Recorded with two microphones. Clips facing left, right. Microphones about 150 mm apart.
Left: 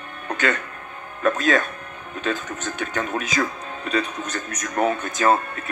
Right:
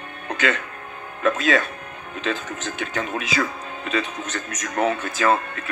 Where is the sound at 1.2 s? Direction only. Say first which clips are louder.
Even; 45° left (ahead or behind).